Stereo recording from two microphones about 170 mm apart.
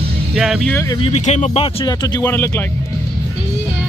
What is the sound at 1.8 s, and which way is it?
Speech, 25° left (ahead or behind).